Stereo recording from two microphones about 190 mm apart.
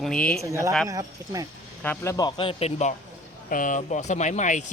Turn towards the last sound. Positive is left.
turn(degrees=40)  # may be behind; listen again after turning